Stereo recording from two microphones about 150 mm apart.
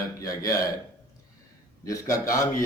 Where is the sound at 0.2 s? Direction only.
20° left (ahead or behind).